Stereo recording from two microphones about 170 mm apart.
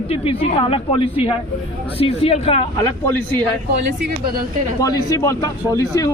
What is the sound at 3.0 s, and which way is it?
Speech, 10° left (ahead or behind).